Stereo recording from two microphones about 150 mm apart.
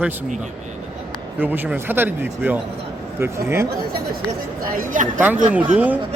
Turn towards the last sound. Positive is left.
turn(degrees=-10)  # may be behind; listen again after turning